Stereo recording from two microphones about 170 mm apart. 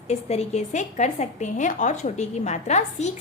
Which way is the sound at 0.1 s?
40° left (ahead or behind).